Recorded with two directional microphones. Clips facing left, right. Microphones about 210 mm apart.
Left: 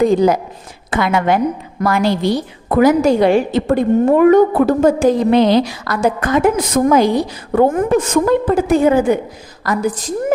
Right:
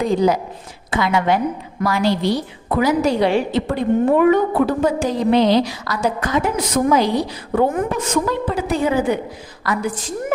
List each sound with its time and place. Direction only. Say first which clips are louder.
0.0 s a woman's voice: left 4 dB; 50° left (ahead or behind)
9.6 s a woman's voice: left 4 dB; 40° left (ahead or behind)